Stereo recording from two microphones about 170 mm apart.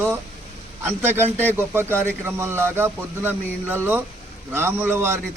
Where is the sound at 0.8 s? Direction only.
15° right (ahead or behind).